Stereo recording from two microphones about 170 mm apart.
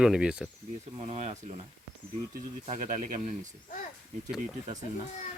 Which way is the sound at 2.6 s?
45° right (ahead or behind).